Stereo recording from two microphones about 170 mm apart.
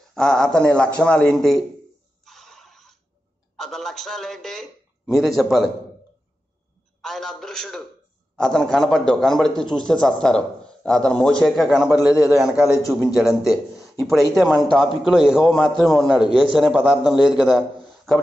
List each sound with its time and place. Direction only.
0.1 s a man's voice: 5° left (ahead or behind)
2.2 s a sound: centre (ahead or behind)
3.5 s a man's voice: centre (ahead or behind)
7.0 s a man's voice: centre (ahead or behind)
12.6 s a man's voice: 15° left (ahead or behind)
12.9 s a man's voice: 5° right (ahead or behind)